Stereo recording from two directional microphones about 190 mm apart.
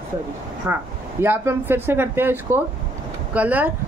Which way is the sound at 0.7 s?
10° right (ahead or behind).